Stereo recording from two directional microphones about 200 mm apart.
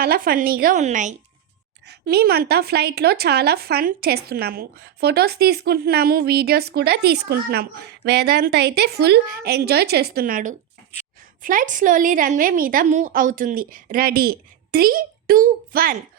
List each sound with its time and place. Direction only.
0.0 s speech: 50° right (ahead or behind)
1.9 s speech: 55° right (ahead or behind)